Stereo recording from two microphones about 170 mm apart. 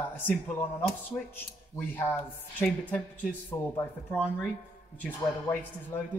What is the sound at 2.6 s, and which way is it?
Speech, 10° left (ahead or behind).